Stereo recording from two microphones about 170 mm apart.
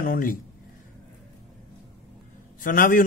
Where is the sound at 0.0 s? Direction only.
55° left (ahead or behind).